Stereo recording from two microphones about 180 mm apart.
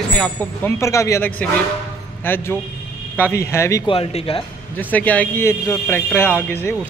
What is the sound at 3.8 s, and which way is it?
Speech, 30° left (ahead or behind).